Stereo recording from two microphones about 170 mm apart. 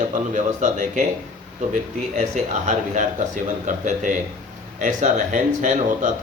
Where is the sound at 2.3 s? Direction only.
45° right (ahead or behind).